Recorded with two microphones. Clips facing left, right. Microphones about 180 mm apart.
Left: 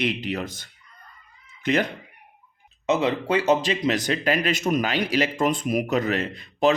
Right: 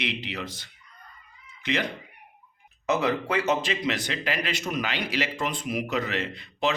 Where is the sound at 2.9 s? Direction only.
25° left (ahead or behind).